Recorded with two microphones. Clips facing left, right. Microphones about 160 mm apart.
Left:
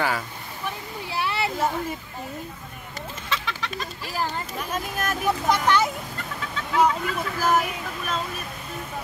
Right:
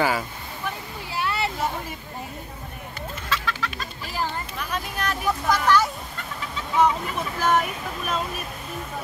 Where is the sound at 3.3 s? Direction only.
20° left (ahead or behind).